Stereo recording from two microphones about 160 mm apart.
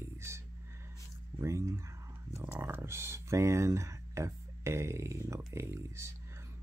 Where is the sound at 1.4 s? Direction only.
20° right (ahead or behind).